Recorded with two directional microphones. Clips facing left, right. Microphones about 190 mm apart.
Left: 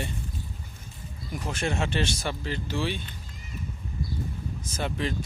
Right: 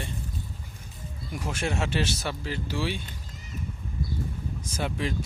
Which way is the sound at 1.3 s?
10° right (ahead or behind).